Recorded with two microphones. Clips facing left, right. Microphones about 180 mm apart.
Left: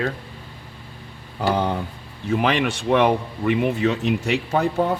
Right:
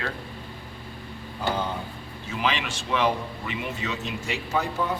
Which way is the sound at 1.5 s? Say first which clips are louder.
Left 6 dB; 65° left (ahead or behind).